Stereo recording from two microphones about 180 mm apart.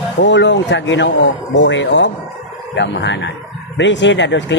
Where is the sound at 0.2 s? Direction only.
80° left.